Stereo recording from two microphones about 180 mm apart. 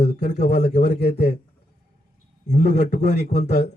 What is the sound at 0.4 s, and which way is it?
Speech, 65° left (ahead or behind).